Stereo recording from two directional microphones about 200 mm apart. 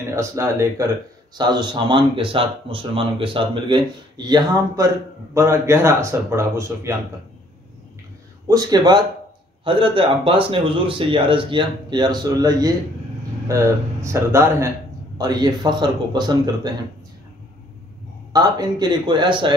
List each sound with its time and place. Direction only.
0.1 s speech: 15° right (ahead or behind)
8.5 s speech: 20° right (ahead or behind)
18.3 s speech: 20° right (ahead or behind)